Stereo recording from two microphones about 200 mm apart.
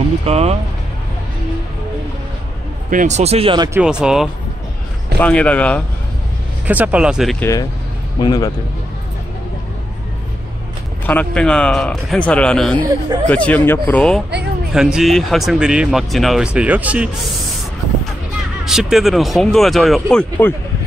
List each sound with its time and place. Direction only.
0.2 s speech: 30° right (ahead or behind)
2.9 s speech: 40° right (ahead or behind); by 3.8 s 20° right (ahead or behind)
3.8 s speech: 5° right (ahead or behind)
6.7 s speech: 5° right (ahead or behind)
7.3 s a man's voice: 15° left (ahead or behind)
11.1 s speech: 5° left (ahead or behind)
18.7 s speech: centre (ahead or behind)